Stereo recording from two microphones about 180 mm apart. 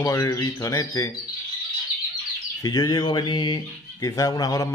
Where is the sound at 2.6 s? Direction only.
20° left (ahead or behind).